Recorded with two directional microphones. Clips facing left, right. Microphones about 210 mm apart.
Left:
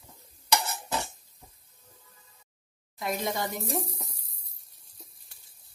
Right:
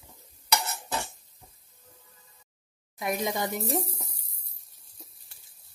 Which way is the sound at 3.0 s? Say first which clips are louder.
Right 2 dB; 15° right (ahead or behind).